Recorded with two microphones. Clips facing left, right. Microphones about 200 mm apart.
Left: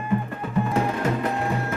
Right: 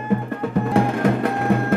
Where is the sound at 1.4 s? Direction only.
55° right (ahead or behind).